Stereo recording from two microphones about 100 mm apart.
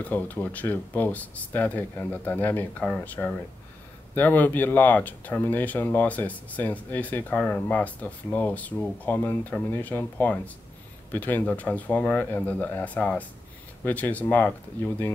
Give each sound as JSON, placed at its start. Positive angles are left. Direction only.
{"t": 0.0, "sound": "speech", "side_deg": 15}